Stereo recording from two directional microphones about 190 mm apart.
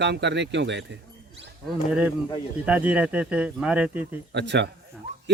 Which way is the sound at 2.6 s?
10° right (ahead or behind).